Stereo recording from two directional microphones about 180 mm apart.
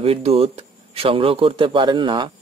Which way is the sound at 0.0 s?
35° right (ahead or behind).